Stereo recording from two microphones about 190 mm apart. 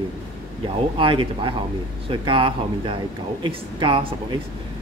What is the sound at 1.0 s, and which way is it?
Speech, 25° right (ahead or behind).